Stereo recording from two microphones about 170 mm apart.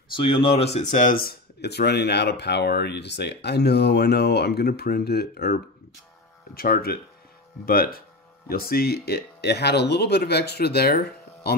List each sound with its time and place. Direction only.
0.1 s speech: 30° left (ahead or behind); by 11.5 s 70° left (ahead or behind)